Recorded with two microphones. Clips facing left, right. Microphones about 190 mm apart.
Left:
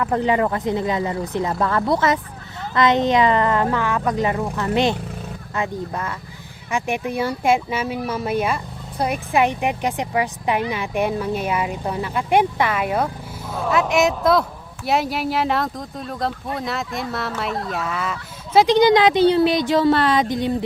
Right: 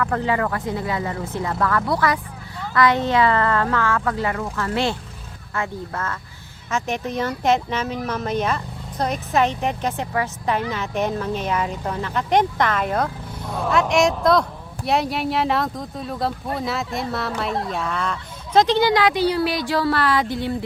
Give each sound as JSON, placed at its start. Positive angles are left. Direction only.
{"t": 0.0, "sound": "speech", "side_deg": 20}